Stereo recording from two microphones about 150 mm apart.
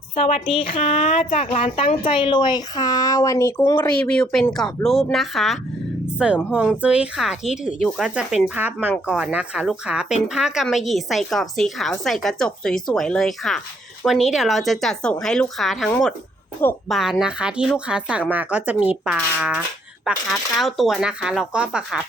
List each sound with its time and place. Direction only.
0.2 s a woman's voice: 45° left (ahead or behind)
1.3 s speech: 50° left (ahead or behind)
1.6 s a woman's voice: 35° left (ahead or behind); by 3.8 s 20° left (ahead or behind)
4.0 s a woman's voice: 5° left (ahead or behind)
16.9 s a woman's voice: centre (ahead or behind)